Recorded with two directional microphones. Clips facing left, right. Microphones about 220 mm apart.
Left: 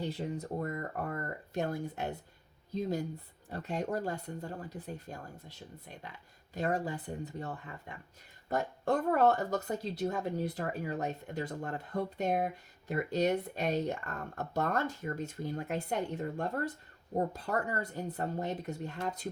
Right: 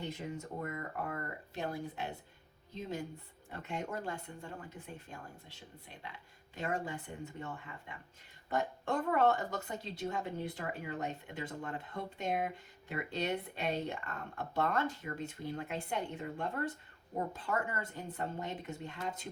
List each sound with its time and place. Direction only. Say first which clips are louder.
0.0 s speech: left 5 dB; 35° left (ahead or behind)